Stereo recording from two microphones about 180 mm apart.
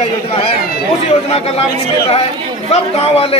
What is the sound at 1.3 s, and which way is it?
Speech, 35° left (ahead or behind).